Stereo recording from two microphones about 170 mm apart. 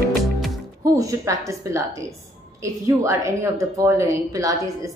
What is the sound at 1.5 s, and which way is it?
A woman's voice, 15° right (ahead or behind).